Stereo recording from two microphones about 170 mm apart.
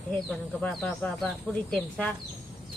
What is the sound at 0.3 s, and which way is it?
Speech, 5° left (ahead or behind).